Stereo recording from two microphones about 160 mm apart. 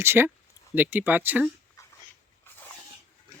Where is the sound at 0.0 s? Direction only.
15° right (ahead or behind).